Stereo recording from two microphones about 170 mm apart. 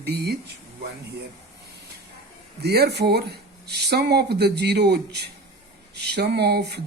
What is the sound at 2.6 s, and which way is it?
Speech, 70° right (ahead or behind).